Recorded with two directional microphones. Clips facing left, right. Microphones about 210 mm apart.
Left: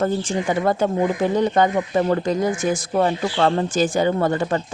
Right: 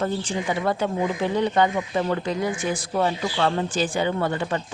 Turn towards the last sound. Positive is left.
turn(degrees=45)  # may be behind; listen again after turning